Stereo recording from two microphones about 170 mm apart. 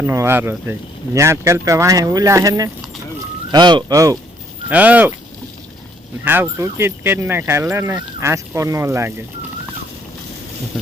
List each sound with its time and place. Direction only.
0.0 s speech: 15° right (ahead or behind)
4.7 s speech: 10° right (ahead or behind)
6.2 s speech: 10° right (ahead or behind)